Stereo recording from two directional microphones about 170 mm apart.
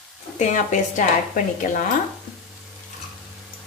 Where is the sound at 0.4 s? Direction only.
45° left (ahead or behind).